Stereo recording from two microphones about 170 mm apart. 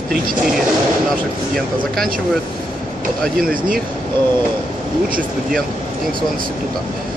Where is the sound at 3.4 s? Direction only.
55° right (ahead or behind).